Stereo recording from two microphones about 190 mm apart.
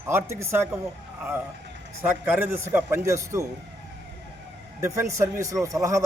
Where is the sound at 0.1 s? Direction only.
15° right (ahead or behind).